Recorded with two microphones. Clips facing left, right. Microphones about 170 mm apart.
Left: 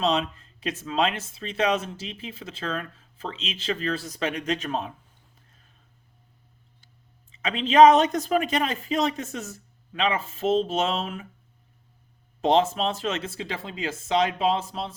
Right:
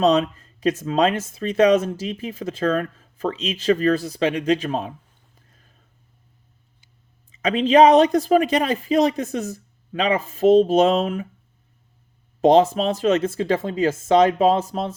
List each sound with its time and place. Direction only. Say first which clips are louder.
0.0 s speech: right 7 dB; 40° right (ahead or behind)
7.3 s speech: right 8 dB; 40° right (ahead or behind)
12.4 s speech: right 6 dB; 40° right (ahead or behind)